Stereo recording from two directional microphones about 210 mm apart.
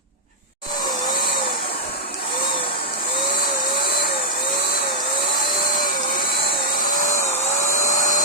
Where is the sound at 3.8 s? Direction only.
45° left (ahead or behind).